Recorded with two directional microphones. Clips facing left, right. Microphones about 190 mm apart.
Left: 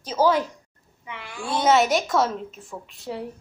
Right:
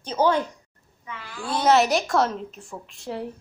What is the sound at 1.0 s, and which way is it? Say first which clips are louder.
Speech: left 1 dB; 15° left (ahead or behind).